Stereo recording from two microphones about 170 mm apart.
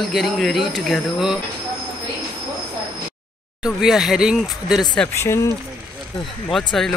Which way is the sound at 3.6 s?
Centre (ahead or behind).